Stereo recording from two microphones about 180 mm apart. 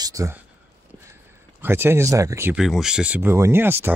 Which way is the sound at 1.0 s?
15° right (ahead or behind).